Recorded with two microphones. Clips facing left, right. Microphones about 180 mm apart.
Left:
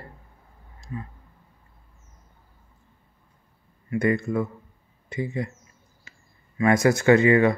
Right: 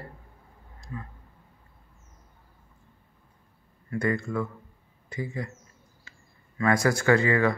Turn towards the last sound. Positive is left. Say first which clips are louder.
# left 5 dB
turn(degrees=20)  # may be behind; listen again after turning